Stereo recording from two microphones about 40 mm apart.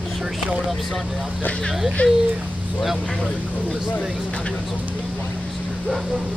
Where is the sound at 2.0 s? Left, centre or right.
Left.